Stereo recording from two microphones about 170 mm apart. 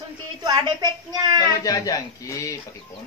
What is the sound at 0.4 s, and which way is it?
A woman's voice, 25° right (ahead or behind).